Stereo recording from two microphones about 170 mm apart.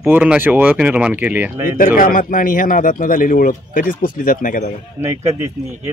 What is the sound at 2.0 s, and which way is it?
Speech, 55° left (ahead or behind).